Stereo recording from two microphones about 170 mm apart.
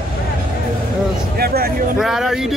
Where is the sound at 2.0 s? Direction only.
Centre (ahead or behind).